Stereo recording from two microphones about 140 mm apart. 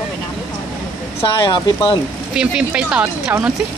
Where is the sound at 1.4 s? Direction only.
35° left (ahead or behind).